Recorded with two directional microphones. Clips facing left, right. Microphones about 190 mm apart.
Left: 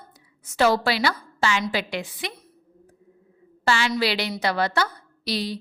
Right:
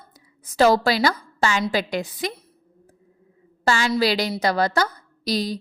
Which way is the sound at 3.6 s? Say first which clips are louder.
Right 3 dB; 40° right (ahead or behind).